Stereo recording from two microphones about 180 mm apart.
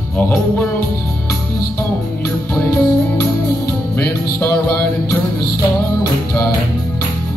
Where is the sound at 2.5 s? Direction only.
10° left (ahead or behind).